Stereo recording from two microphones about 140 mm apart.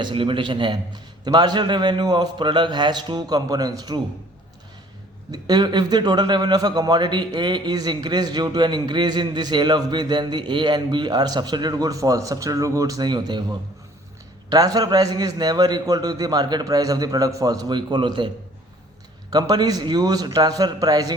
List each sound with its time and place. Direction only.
0.0 s speech: 35° right (ahead or behind)
5.3 s a man's voice: 30° right (ahead or behind)
14.5 s a man's voice: 30° right (ahead or behind)
19.3 s a man's voice: 30° right (ahead or behind)